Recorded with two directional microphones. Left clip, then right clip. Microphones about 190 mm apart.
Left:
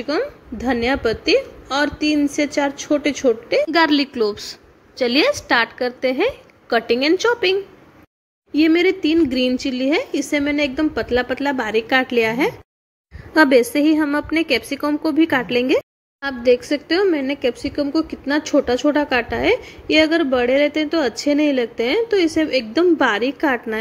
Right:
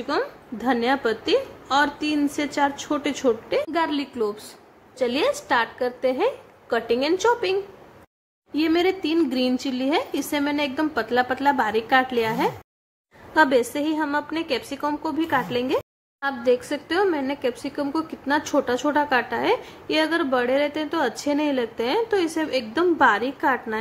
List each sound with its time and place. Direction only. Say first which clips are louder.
0.0 s a woman's voice: left 3 dB; 10° left (ahead or behind)
3.7 s a woman's voice: left 8 dB; 20° left (ahead or behind)
8.5 s a woman's voice: left 6 dB; 10° left (ahead or behind)